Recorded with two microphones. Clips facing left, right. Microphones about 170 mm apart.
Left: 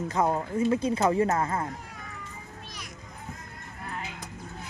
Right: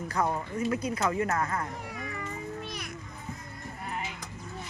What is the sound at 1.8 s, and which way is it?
Cat, 70° right (ahead or behind).